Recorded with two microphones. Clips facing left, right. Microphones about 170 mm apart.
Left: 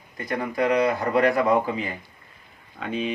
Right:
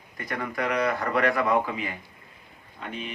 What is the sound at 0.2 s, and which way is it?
A man's voice, 25° left (ahead or behind).